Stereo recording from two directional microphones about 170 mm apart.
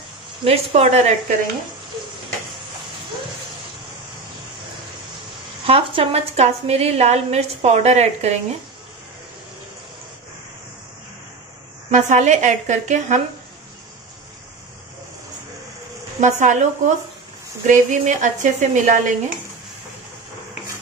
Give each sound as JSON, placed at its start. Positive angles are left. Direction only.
{"t": 0.4, "sound": "a woman's voice", "side_deg": -35}
{"t": 5.7, "sound": "a woman's voice", "side_deg": -35}
{"t": 11.9, "sound": "a woman's voice", "side_deg": -45}
{"t": 16.2, "sound": "a woman's voice", "side_deg": -45}